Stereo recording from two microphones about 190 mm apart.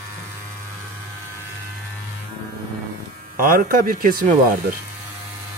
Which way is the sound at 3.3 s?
50° right (ahead or behind).